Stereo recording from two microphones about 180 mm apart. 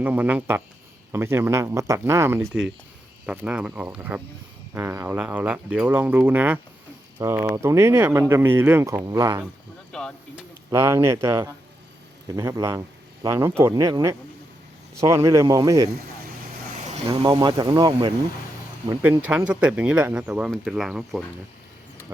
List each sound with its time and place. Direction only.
0.0 s speech: 10° right (ahead or behind)
9.9 s speech: 5° left (ahead or behind)
10.7 s speech: 15° right (ahead or behind)
16.9 s speech: 30° right (ahead or behind)
19.5 s speech: 10° right (ahead or behind)